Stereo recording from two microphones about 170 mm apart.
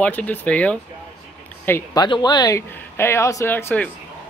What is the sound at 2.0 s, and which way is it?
Speech, 25° left (ahead or behind).